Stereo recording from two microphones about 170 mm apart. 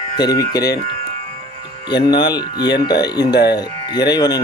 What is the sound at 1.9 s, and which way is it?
Speech, 25° left (ahead or behind).